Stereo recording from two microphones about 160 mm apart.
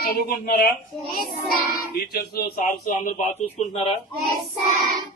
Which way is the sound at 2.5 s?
50° left (ahead or behind).